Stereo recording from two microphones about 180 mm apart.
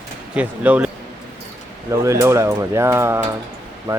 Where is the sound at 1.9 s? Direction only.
15° right (ahead or behind).